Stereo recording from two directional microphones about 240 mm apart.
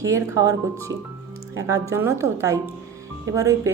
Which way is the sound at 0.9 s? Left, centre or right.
Right.